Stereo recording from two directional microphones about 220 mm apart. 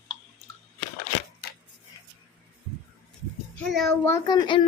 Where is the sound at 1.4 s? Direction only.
50° left (ahead or behind).